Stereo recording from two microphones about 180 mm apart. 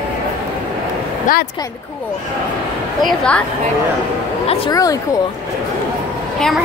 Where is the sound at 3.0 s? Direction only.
5° left (ahead or behind).